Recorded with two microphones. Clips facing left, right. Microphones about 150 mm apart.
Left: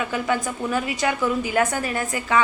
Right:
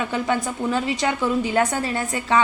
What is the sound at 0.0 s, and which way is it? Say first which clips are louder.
A woman's voice: right 1 dB; 25° right (ahead or behind).